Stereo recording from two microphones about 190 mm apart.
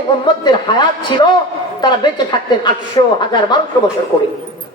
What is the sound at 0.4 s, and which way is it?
A man's voice, 25° left (ahead or behind).